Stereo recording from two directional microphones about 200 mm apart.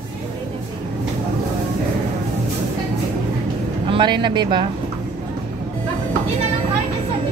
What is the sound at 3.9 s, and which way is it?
Speech, 25° right (ahead or behind).